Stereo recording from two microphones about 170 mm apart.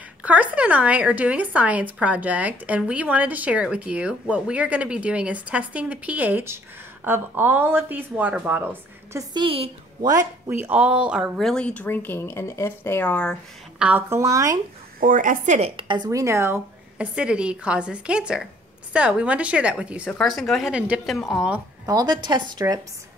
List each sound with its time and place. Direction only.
0.2 s a woman's voice: 10° right (ahead or behind)
9.3 s a woman's voice: 30° right (ahead or behind)
10.1 s speech: 15° right (ahead or behind); by 13.4 s 5° left (ahead or behind)
13.7 s a woman's voice: 10° right (ahead or behind)
15.0 s a woman's voice: 50° right (ahead or behind)
15.7 s a woman's voice: 25° right (ahead or behind); by 21.5 s centre (ahead or behind)
21.8 s a woman's voice: 25° right (ahead or behind)